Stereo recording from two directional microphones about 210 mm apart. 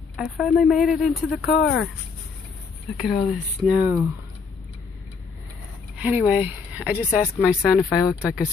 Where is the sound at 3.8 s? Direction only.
15° right (ahead or behind).